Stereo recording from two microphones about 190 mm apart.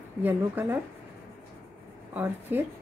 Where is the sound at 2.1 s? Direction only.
10° right (ahead or behind).